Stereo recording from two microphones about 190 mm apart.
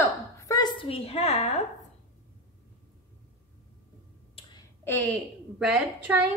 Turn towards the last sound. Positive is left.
turn(degrees=-5)  # may be behind; listen again after turning